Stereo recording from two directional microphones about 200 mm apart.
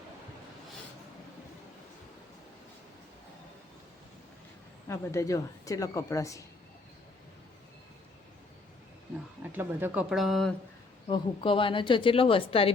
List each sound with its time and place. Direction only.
4.9 s a woman's voice: 15° left (ahead or behind)
9.4 s speech: 10° right (ahead or behind)
11.1 s a woman's voice: 25° left (ahead or behind)